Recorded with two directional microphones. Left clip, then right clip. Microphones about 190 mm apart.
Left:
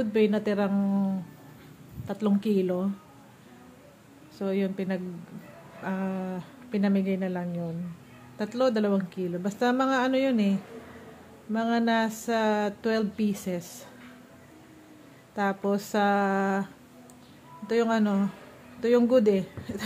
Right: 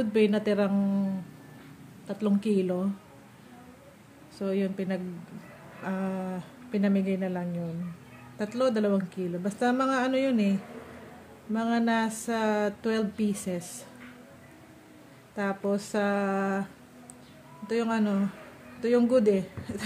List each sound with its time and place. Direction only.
0.0 s speech: centre (ahead or behind)
2.0 s speech: 10° left (ahead or behind)
4.4 s speech: 5° left (ahead or behind)
15.3 s speech: 15° left (ahead or behind)
17.6 s speech: 15° left (ahead or behind)